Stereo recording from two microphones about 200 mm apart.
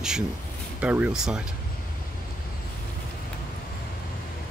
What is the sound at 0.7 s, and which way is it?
Speech, 5° right (ahead or behind).